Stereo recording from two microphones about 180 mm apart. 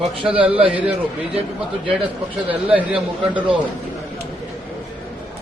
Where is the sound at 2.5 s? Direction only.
10° right (ahead or behind).